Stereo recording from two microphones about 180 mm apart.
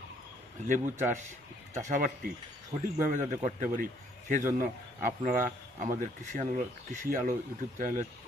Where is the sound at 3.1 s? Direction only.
45° right (ahead or behind).